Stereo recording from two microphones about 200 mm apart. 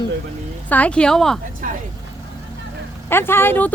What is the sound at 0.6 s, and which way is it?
Speech, 5° left (ahead or behind).